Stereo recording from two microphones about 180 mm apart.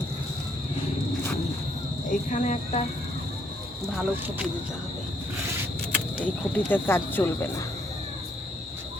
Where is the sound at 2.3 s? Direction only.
45° left (ahead or behind).